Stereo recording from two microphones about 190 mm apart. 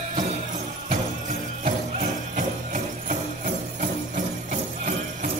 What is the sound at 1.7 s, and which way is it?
Jingle bell, 40° right (ahead or behind).